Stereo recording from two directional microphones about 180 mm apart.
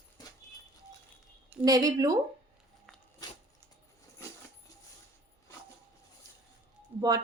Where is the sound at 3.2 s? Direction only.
20° left (ahead or behind).